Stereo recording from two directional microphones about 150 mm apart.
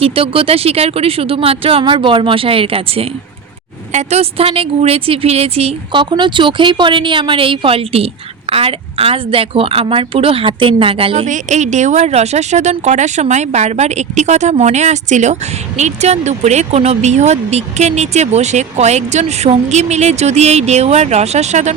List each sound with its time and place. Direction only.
0.0 s a woman's voice: 40° right (ahead or behind)
11.3 s speech: 50° right (ahead or behind)